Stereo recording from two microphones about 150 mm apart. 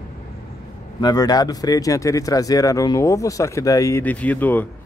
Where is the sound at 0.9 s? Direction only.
25° left (ahead or behind).